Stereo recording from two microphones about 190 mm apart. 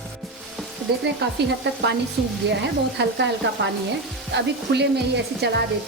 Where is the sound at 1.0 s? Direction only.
65° right (ahead or behind).